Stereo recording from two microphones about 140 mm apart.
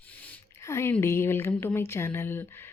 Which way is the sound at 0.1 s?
10° left (ahead or behind).